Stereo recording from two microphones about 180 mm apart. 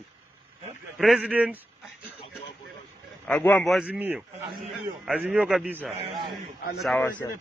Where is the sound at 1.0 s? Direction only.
5° right (ahead or behind).